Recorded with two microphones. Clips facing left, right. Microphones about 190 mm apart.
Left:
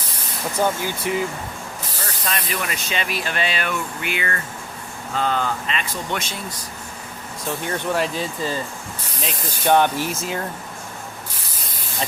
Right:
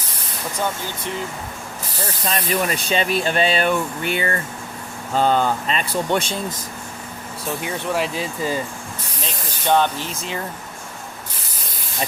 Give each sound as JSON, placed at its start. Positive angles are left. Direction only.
{"t": 0.5, "sound": "speech", "side_deg": 10}
{"t": 2.2, "sound": "speech", "side_deg": -35}
{"t": 7.6, "sound": "speech", "side_deg": -5}
{"t": 9.6, "sound": "speech", "side_deg": 15}